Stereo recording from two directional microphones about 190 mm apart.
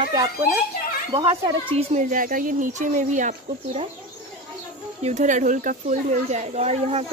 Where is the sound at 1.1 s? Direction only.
30° right (ahead or behind).